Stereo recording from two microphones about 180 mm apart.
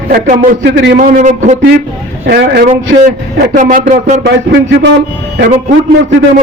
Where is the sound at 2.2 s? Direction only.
65° right (ahead or behind).